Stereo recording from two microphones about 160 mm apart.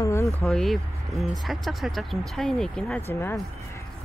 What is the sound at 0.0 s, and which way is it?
Vehicle, 20° left (ahead or behind).